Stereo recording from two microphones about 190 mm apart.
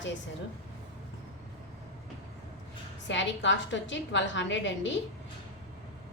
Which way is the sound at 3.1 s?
75° left (ahead or behind).